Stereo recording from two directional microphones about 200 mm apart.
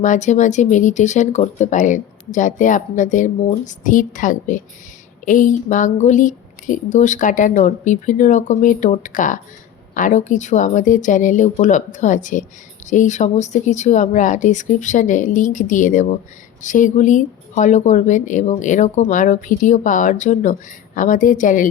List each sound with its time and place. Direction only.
0.0 s speech: 40° left (ahead or behind)